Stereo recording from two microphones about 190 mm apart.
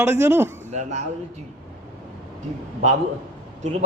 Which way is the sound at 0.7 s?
40° right (ahead or behind).